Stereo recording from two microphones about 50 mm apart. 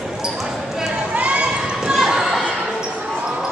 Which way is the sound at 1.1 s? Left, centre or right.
Right.